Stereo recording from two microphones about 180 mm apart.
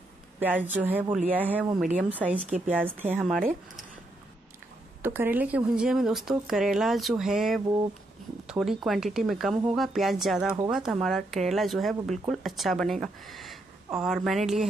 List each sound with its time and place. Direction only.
0.4 s speech: 10° right (ahead or behind)
5.0 s speech: 10° right (ahead or behind)